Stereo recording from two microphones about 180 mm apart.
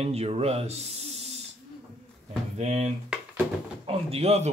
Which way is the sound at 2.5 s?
35° right (ahead or behind).